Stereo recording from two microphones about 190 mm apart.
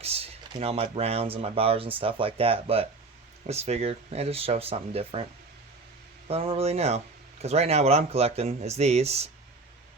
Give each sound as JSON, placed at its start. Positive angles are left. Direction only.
{"t": 0.0, "sound": "speech", "side_deg": -30}
{"t": 6.2, "sound": "speech", "side_deg": -30}